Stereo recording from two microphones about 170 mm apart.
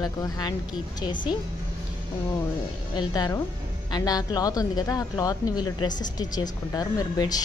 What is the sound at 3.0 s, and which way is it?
A woman's voice, 20° left (ahead or behind).